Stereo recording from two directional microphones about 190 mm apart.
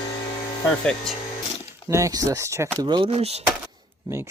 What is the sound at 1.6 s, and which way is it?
Speech, 15° right (ahead or behind).